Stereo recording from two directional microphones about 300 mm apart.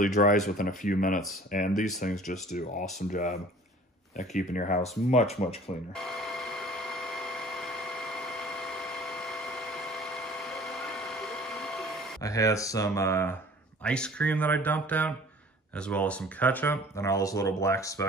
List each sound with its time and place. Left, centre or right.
0.0 s speech: left
5.9 s a sound: centre
10.5 s ratchet: centre
13.8 s speech: centre